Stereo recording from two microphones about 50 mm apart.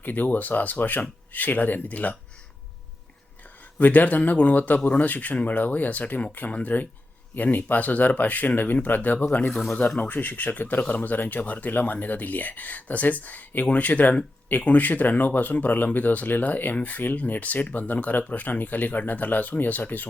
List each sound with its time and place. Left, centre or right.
0.0 s speech: left
3.4 s speech: left